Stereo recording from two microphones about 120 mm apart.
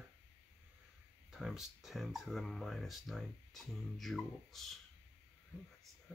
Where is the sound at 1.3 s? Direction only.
5° right (ahead or behind).